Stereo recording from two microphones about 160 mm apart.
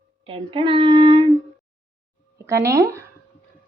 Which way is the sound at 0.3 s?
30° right (ahead or behind).